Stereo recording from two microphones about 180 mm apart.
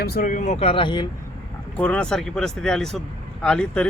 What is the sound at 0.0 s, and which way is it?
Speech, 55° left (ahead or behind).